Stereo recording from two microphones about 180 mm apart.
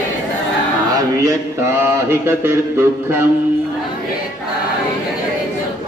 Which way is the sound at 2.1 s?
15° right (ahead or behind).